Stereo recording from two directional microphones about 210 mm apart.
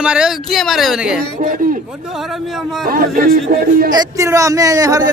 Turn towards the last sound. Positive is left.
turn(degrees=-15)  # may be behind; listen again after turning